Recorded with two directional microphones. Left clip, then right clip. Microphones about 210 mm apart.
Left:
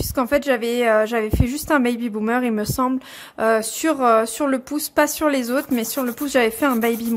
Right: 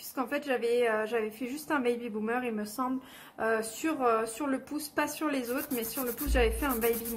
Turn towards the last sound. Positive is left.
turn(degrees=50)  # may be behind; listen again after turning